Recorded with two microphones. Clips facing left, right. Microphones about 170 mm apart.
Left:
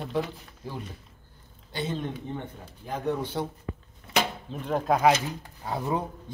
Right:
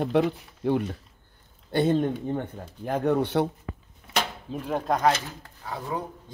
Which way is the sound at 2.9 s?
65° right (ahead or behind).